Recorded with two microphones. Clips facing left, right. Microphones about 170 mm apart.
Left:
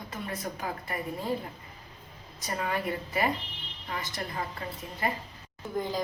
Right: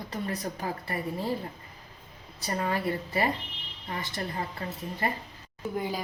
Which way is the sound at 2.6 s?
30° right (ahead or behind).